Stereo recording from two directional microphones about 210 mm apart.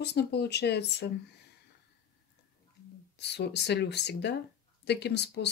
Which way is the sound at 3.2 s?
55° left (ahead or behind).